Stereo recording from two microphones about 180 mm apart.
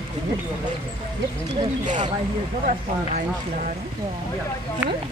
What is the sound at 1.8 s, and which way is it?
Speech, 40° right (ahead or behind).